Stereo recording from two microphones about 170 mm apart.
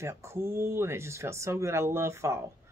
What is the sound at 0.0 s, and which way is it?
Speech, 15° right (ahead or behind).